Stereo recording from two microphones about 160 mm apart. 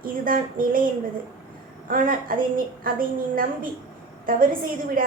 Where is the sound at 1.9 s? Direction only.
60° right (ahead or behind).